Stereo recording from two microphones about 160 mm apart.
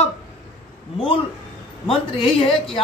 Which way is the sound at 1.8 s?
35° left (ahead or behind).